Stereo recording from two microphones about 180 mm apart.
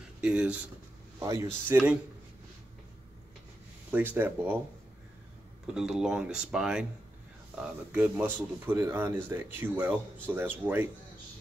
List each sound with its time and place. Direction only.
0.2 s speech: 5° right (ahead or behind)
1.2 s speech: 20° right (ahead or behind)
3.9 s speech: 10° right (ahead or behind)
5.8 s speech: 5° right (ahead or behind)